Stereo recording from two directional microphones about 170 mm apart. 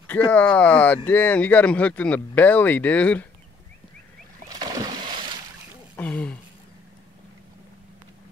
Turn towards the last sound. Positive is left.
turn(degrees=10)  # may be behind; listen again after turning